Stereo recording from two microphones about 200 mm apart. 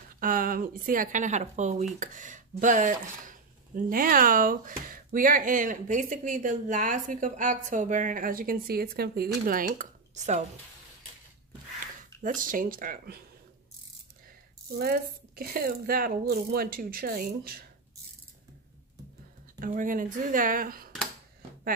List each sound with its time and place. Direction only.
0.2 s a woman's voice: 45° right (ahead or behind)
12.2 s a woman's voice: 45° right (ahead or behind)
14.7 s a woman's voice: 50° right (ahead or behind)
19.6 s a woman's voice: 40° right (ahead or behind)